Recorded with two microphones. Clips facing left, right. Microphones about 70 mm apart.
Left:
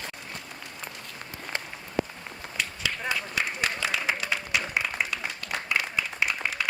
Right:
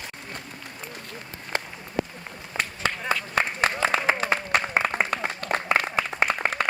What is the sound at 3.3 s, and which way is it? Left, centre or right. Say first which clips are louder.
Applause: right 5 dB; right.